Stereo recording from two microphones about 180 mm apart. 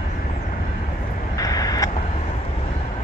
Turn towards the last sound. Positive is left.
turn(degrees=20)  # may be behind; listen again after turning